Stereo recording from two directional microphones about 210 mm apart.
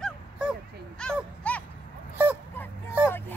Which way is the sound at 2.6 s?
10° left (ahead or behind).